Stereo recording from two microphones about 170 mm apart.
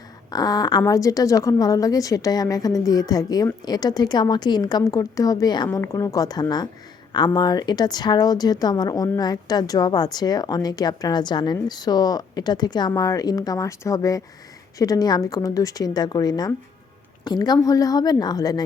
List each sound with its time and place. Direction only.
0.3 s a woman's voice: 20° left (ahead or behind)